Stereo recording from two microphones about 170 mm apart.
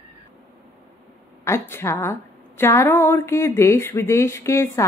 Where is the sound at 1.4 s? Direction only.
15° left (ahead or behind).